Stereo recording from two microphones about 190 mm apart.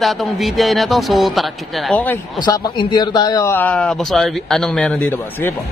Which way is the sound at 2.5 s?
20° left (ahead or behind).